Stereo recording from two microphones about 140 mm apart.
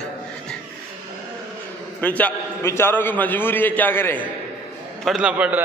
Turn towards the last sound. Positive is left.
turn(degrees=-10)  # may be behind; listen again after turning